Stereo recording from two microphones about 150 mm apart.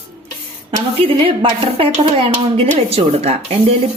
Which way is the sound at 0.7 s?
35° right (ahead or behind).